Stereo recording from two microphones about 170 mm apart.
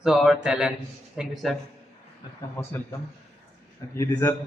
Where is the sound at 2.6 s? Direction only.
15° left (ahead or behind).